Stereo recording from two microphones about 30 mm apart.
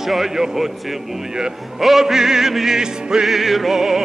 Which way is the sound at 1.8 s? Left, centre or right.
Centre.